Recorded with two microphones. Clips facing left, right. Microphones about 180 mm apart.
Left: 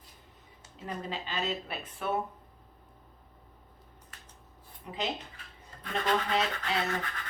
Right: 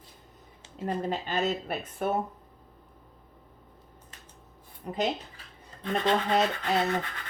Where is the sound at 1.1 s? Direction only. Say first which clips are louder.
Right 5 dB; 50° right (ahead or behind).